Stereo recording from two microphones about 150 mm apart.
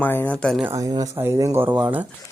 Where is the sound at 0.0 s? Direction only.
15° left (ahead or behind).